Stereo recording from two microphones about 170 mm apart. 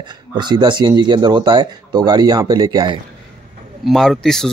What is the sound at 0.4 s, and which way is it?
Speech, 25° right (ahead or behind).